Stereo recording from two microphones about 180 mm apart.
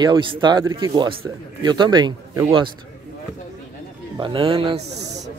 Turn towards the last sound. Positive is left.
turn(degrees=-30)  # may be behind; listen again after turning